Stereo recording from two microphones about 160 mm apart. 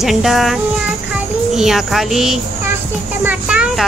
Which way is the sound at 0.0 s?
Centre (ahead or behind).